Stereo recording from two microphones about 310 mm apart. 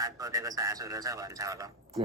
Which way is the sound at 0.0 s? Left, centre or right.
Centre.